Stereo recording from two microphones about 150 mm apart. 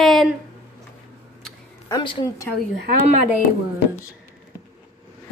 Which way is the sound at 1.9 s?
25° left (ahead or behind).